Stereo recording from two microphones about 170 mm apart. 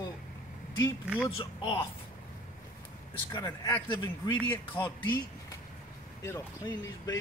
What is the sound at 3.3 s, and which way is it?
A man's voice, 15° left (ahead or behind).